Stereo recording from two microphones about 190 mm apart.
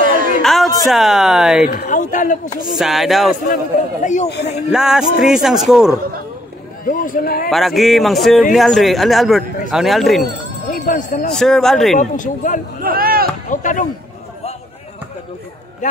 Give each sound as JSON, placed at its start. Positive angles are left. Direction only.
{"t": 0.0, "sound": "a sound", "side_deg": -45}
{"t": 0.4, "sound": "speech", "side_deg": 0}
{"t": 1.7, "sound": "speech", "side_deg": 45}
{"t": 2.8, "sound": "speech", "side_deg": 0}
{"t": 4.0, "sound": "speech", "side_deg": 40}
{"t": 4.6, "sound": "speech", "side_deg": -5}
{"t": 6.8, "sound": "speech", "side_deg": 45}
{"t": 7.4, "sound": "speech", "side_deg": 0}
{"t": 10.7, "sound": "speech", "side_deg": 45}
{"t": 11.3, "sound": "speech", "side_deg": 0}
{"t": 12.0, "sound": "speech", "side_deg": 40}
{"t": 12.8, "sound": "speech", "side_deg": -50}
{"t": 13.5, "sound": "speech", "side_deg": 45}